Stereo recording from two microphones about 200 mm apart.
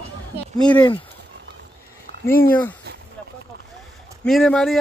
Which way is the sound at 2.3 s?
45° left (ahead or behind).